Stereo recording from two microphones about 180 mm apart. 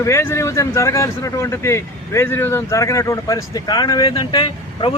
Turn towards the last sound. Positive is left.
turn(degrees=30)  # may be behind; listen again after turning